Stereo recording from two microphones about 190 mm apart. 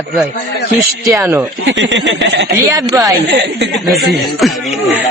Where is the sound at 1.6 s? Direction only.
70° right (ahead or behind).